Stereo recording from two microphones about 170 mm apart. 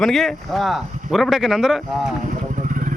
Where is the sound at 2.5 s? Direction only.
50° right (ahead or behind).